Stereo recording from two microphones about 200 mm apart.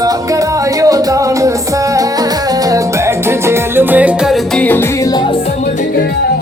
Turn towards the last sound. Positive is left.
turn(degrees=20)  # may be behind; listen again after turning